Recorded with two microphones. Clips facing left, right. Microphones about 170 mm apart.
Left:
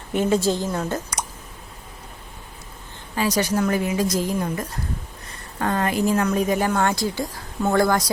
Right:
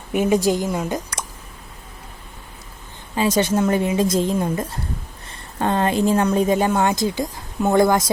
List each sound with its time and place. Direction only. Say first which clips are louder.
0.1 s a woman's voice: right 2 dB; 15° right (ahead or behind)
3.2 s a woman's voice: right 3 dB; 25° right (ahead or behind)